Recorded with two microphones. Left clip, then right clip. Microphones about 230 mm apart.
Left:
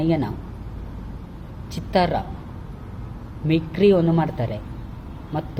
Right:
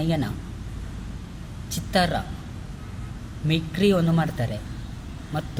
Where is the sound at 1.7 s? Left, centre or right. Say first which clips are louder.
Left 3 dB; centre.